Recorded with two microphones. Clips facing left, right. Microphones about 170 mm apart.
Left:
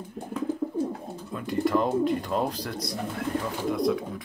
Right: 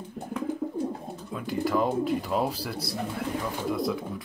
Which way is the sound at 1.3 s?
Centre (ahead or behind).